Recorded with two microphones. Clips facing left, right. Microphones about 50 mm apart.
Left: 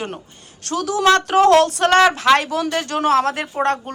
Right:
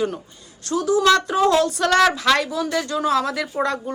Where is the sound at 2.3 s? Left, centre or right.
Left.